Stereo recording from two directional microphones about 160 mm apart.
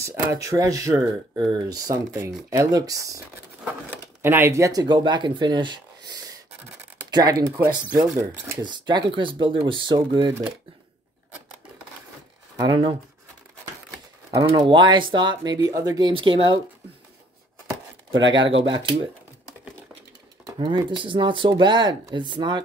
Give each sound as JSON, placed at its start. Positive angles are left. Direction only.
{"t": 0.0, "sound": "speech", "side_deg": -20}
{"t": 4.2, "sound": "speech", "side_deg": -15}
{"t": 12.6, "sound": "speech", "side_deg": -30}
{"t": 14.4, "sound": "speech", "side_deg": -30}
{"t": 18.3, "sound": "speech", "side_deg": -30}
{"t": 20.4, "sound": "speech", "side_deg": -30}